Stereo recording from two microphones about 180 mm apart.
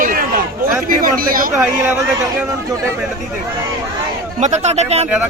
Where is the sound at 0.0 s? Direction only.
50° right (ahead or behind).